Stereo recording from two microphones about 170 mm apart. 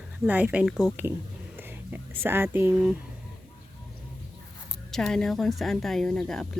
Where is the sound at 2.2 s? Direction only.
15° right (ahead or behind).